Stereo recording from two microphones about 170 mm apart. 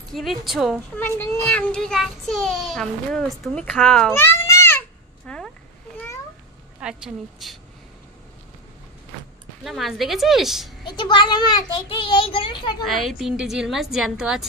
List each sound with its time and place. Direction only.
0.1 s a woman's voice: centre (ahead or behind)
0.9 s a child's voice: 15° left (ahead or behind)
4.1 s babbling: 15° left (ahead or behind)
6.8 s a child's voice: 5° right (ahead or behind)
9.6 s a child's voice: centre (ahead or behind)
10.9 s a child's voice: 25° left (ahead or behind)
12.8 s a child's voice: centre (ahead or behind)